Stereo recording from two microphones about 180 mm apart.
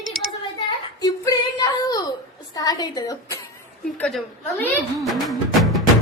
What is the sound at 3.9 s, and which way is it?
Speech, 5° left (ahead or behind).